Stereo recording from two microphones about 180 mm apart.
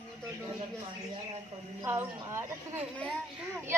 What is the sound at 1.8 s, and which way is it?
A woman's voice, 15° right (ahead or behind).